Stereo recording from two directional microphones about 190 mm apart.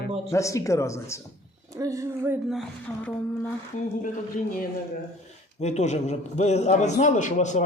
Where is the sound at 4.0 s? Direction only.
45° left (ahead or behind).